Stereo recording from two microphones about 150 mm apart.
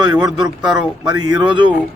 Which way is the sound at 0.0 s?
25° right (ahead or behind).